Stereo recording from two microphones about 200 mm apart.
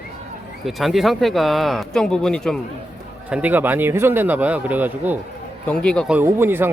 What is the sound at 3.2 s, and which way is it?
Speech, 5° right (ahead or behind).